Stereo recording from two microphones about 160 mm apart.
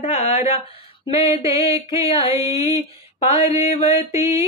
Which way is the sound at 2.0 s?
35° left (ahead or behind).